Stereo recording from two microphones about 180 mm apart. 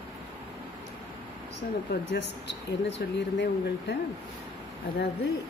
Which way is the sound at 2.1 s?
70° left (ahead or behind).